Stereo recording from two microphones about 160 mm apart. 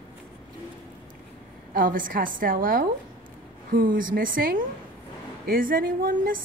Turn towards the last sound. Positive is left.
turn(degrees=-60)  # may be behind; listen again after turning